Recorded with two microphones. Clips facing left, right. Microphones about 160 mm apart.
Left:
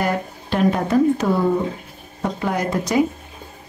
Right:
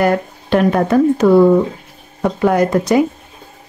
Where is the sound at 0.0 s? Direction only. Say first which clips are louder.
Right 7 dB; 65° right (ahead or behind).